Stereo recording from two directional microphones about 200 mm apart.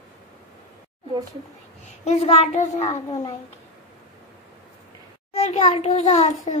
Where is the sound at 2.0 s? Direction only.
35° left (ahead or behind).